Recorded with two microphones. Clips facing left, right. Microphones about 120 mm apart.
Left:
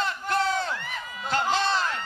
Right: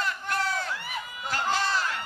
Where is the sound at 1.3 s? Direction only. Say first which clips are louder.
Left 3 dB; 25° left (ahead or behind).